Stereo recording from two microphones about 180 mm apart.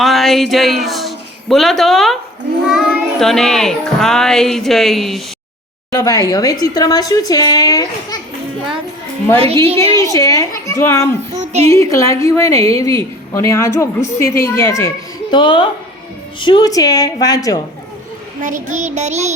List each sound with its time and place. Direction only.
0.0 s speech: centre (ahead or behind)
2.6 s child singing: centre (ahead or behind)
5.9 s speech: 20° left (ahead or behind)
9.4 s child singing: 35° right (ahead or behind)
9.9 s a woman's voice: 15° left (ahead or behind)
11.3 s child singing: 35° right (ahead or behind)
11.7 s a woman's voice: 15° left (ahead or behind)
15.4 s speech: 25° left (ahead or behind)
18.4 s child singing: 45° right (ahead or behind)